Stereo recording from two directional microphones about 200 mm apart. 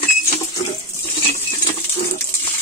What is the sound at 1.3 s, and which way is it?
Patter, 30° left (ahead or behind).